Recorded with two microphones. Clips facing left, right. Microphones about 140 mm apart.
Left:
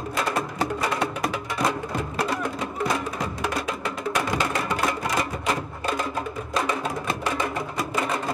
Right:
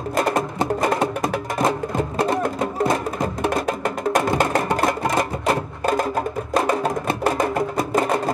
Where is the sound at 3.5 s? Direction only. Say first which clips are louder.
Right 6 dB; 50° right (ahead or behind).